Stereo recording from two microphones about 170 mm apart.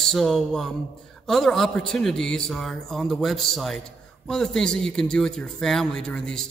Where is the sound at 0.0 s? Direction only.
Centre (ahead or behind).